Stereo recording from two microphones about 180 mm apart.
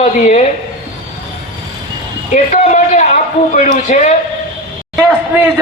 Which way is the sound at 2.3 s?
40° left (ahead or behind).